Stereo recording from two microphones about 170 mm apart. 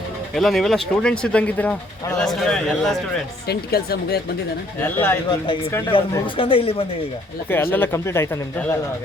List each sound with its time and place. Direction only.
0.3 s speech: centre (ahead or behind)
3.4 s a woman's voice: 65° left (ahead or behind)
4.8 s speech: 10° left (ahead or behind)
5.9 s speech: 30° left (ahead or behind)
7.5 s speech: 10° left (ahead or behind)